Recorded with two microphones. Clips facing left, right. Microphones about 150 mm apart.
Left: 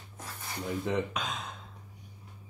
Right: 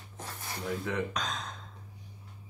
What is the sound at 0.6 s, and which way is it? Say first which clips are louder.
Speech: left 3 dB; 20° left (ahead or behind).